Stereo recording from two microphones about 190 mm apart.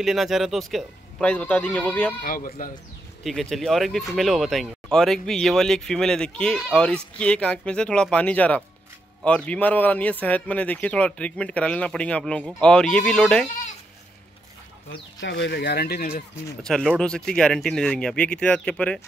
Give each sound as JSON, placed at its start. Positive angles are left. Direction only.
{"t": 0.0, "sound": "speech", "side_deg": 0}
{"t": 2.2, "sound": "speech", "side_deg": 50}
{"t": 3.3, "sound": "speech", "side_deg": 0}
{"t": 14.9, "sound": "speech", "side_deg": 70}
{"t": 16.6, "sound": "speech", "side_deg": 0}